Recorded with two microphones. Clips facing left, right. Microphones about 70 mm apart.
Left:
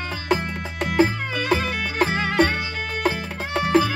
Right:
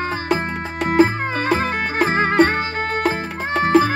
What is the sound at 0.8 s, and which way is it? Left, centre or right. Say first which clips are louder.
Music: right 4 dB; right.